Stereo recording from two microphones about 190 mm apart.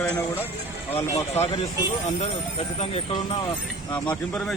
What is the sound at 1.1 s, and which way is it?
Speech, 35° left (ahead or behind).